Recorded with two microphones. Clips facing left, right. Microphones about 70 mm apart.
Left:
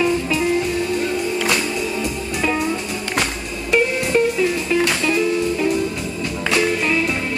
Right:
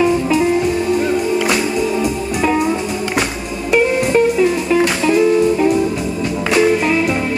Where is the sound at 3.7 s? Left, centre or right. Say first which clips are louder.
Right 4 dB; centre.